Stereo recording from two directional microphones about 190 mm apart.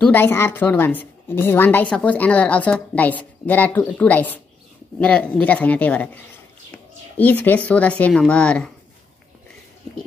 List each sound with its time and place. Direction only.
0.0 s a woman's voice: 10° left (ahead or behind)
7.2 s a woman's voice: 10° left (ahead or behind)